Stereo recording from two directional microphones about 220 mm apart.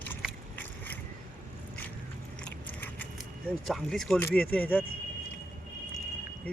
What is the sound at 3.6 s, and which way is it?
Speech, centre (ahead or behind).